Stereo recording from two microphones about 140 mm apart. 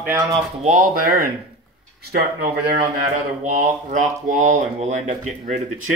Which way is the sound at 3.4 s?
60° right (ahead or behind).